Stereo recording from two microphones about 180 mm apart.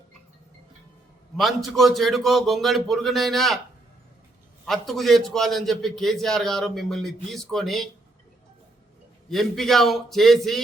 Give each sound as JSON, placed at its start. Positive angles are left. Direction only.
{"t": 1.4, "sound": "a man's voice", "side_deg": 0}
{"t": 4.6, "sound": "a man's voice", "side_deg": 0}
{"t": 9.3, "sound": "a man's voice", "side_deg": 0}